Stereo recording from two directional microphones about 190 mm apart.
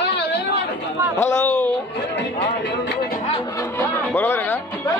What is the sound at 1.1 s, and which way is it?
Speech, 10° left (ahead or behind).